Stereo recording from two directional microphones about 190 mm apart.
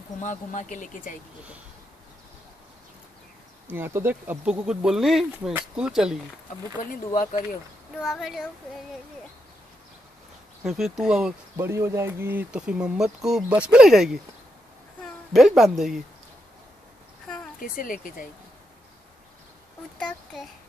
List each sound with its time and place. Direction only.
0.2 s speech: 40° left (ahead or behind)
3.6 s speech: 10° right (ahead or behind)
8.0 s speech: centre (ahead or behind)
10.6 s speech: centre (ahead or behind)
11.5 s speech: 15° right (ahead or behind)
15.3 s speech: centre (ahead or behind)
17.7 s speech: 45° left (ahead or behind)
20.0 s a child's voice: 5° left (ahead or behind)